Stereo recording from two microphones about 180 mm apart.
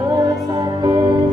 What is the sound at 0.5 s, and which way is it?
Music, 25° right (ahead or behind).